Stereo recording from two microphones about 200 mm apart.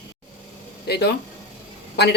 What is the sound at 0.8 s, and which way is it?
Speech, 55° left (ahead or behind).